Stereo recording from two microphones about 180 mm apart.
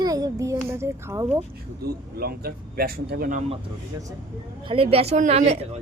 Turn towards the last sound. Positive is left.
turn(degrees=-40)  # may be behind; listen again after turning